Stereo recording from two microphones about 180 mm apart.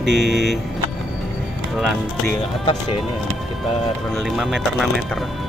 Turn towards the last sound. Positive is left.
turn(degrees=0)  # may be behind; listen again after turning